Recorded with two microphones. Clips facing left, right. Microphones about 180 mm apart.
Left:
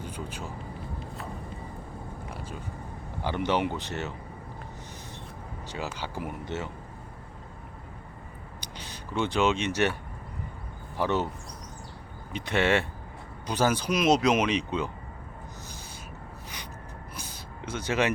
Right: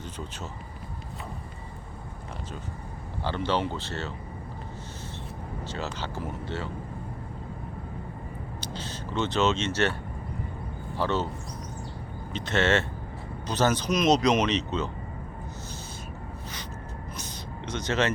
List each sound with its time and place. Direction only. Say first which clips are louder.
3.2 s speech: left 1 dB; 15° left (ahead or behind)
5.7 s speech: even; 10° left (ahead or behind)
8.6 s speech: right 6 dB; 15° left (ahead or behind)
10.9 s speech: even; 15° left (ahead or behind)
12.3 s speech: even; 10° left (ahead or behind)
17.7 s speech: even; 10° left (ahead or behind)